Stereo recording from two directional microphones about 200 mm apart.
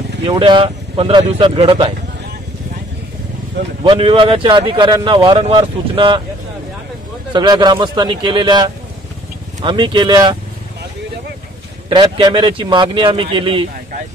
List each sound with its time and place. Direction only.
0.2 s speech: 25° right (ahead or behind)
3.8 s speech: 25° right (ahead or behind)
7.3 s speech: 20° right (ahead or behind)
11.9 s speech: 20° right (ahead or behind)